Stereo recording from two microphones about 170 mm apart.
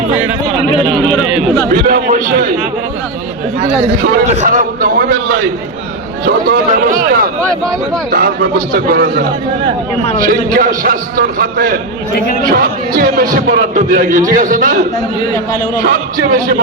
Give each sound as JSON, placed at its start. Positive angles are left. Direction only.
{"t": 0.1, "sound": "a sound", "side_deg": -10}
{"t": 0.9, "sound": "speech", "side_deg": 0}
{"t": 1.7, "sound": "a man's voice", "side_deg": -55}
{"t": 4.3, "sound": "a man's voice", "side_deg": -45}
{"t": 15.8, "sound": "a man's voice", "side_deg": -55}